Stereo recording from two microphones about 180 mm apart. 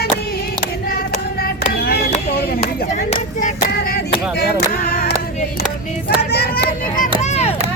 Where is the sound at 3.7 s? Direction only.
60° left (ahead or behind).